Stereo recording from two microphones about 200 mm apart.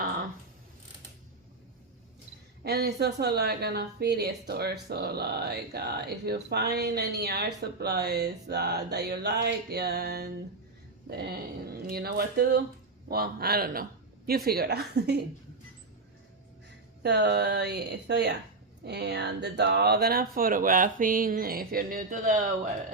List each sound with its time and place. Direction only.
2.6 s speech: 55° right (ahead or behind)
17.0 s speech: 55° right (ahead or behind); by 22.4 s 40° right (ahead or behind)